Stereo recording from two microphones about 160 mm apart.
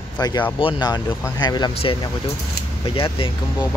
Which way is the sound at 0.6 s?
30° left (ahead or behind).